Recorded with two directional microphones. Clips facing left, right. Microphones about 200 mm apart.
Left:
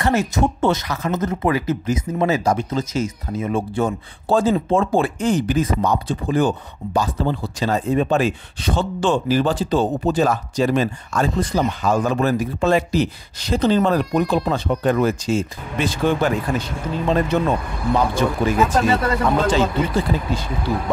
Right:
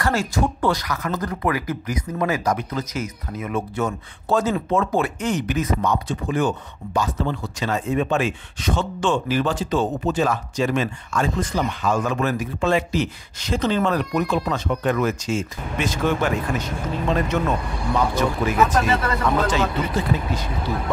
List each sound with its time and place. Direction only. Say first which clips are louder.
0.0 s speech: left 3 dB; 20° left (ahead or behind)